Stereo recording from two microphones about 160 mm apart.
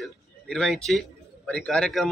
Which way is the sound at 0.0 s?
5° left (ahead or behind).